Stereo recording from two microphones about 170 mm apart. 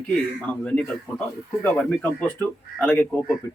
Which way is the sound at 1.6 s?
5° left (ahead or behind).